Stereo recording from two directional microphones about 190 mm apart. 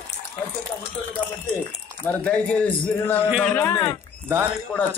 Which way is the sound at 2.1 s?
5° left (ahead or behind).